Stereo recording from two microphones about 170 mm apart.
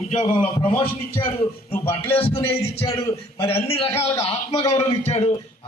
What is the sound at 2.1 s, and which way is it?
Speech, 35° left (ahead or behind).